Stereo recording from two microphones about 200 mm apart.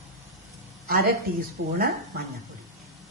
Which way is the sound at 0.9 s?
50° right (ahead or behind).